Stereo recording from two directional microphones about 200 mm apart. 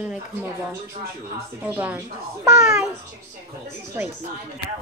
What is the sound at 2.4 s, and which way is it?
Speech, centre (ahead or behind).